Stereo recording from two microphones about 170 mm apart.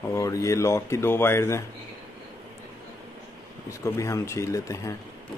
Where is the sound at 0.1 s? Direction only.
20° left (ahead or behind).